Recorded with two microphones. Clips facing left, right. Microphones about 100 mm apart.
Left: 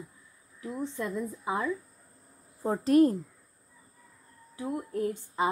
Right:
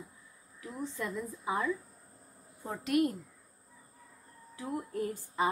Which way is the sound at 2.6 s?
35° left (ahead or behind).